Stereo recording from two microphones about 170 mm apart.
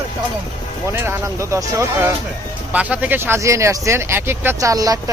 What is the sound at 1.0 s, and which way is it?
Speech, 15° right (ahead or behind).